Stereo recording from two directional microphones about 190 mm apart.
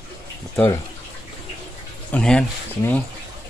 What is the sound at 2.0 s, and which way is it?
Speech, 5° left (ahead or behind).